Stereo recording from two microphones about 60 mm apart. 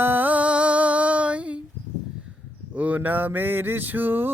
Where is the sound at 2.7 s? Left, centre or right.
Right.